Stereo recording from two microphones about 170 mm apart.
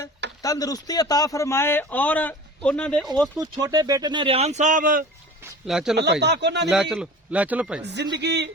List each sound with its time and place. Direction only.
0.4 s speech: 20° left (ahead or behind)
3.4 s speech: 25° right (ahead or behind); by 5.0 s 50° right (ahead or behind)
5.6 s speech: 5° right (ahead or behind)
6.0 s speech: 80° right
6.7 s speech: 5° right (ahead or behind)
7.8 s speech: 85° right